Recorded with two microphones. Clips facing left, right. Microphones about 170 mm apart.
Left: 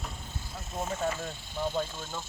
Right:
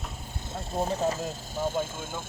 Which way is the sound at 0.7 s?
35° right (ahead or behind).